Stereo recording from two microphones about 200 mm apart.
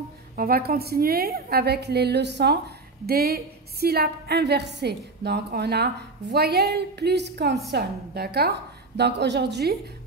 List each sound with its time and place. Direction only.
0.4 s a woman's voice: 50° right (ahead or behind)